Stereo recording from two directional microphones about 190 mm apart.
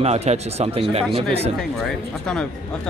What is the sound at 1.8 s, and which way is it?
Speech, 5° left (ahead or behind).